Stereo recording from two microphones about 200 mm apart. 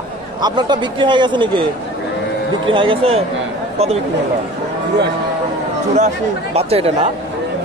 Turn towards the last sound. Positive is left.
turn(degrees=-30)  # may be behind; listen again after turning